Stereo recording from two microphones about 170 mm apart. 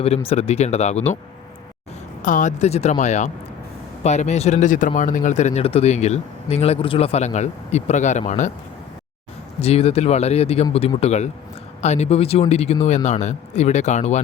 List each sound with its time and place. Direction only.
0.0 s speech: 35° left (ahead or behind)
2.2 s speech: 50° left (ahead or behind)
9.6 s speech: 35° left (ahead or behind)